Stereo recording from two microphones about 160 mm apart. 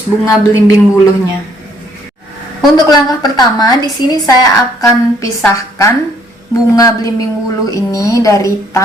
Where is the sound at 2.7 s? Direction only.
25° left (ahead or behind).